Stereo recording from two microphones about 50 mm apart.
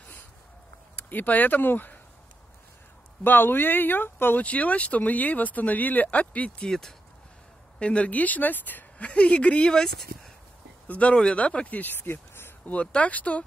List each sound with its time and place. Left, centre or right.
0.9 s speech: left
3.3 s speech: left
4.4 s speech: left
6.7 s speech: centre
7.8 s speech: left
10.9 s speech: left
12.1 s a sound: left
12.8 s speech: left